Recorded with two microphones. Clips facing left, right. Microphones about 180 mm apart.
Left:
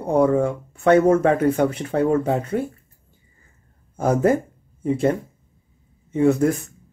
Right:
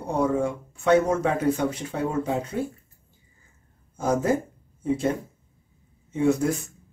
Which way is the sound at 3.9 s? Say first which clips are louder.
Left 5 dB; 60° left (ahead or behind).